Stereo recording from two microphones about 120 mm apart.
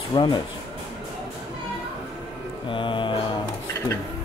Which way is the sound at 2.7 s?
45° left (ahead or behind).